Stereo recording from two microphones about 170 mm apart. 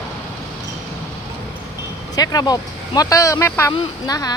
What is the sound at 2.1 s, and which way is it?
A woman's voice, 20° left (ahead or behind).